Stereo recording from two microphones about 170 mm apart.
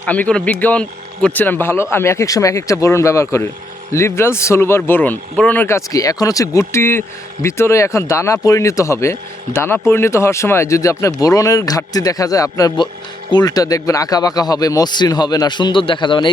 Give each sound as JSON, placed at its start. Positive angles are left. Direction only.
{"t": 0.0, "sound": "speech", "side_deg": 10}